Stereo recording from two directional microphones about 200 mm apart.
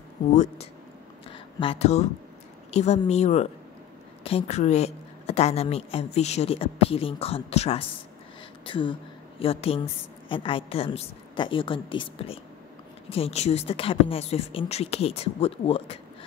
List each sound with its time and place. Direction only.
0.3 s a woman's voice: 35° left (ahead or behind)
1.3 s a sound: 25° left (ahead or behind)
2.7 s a woman's voice: 35° left (ahead or behind)